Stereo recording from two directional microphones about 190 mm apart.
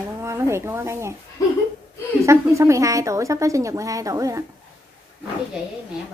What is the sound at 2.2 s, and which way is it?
A woman's voice, 15° right (ahead or behind).